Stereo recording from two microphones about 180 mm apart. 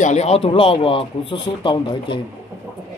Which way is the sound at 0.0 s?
40° left (ahead or behind).